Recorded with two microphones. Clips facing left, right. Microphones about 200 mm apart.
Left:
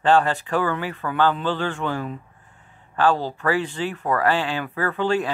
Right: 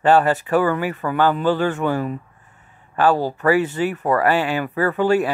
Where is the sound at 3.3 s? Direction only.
10° right (ahead or behind).